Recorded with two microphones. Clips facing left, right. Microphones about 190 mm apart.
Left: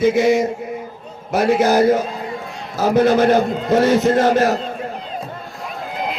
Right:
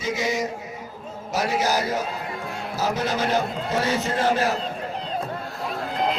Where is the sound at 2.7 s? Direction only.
55° left (ahead or behind).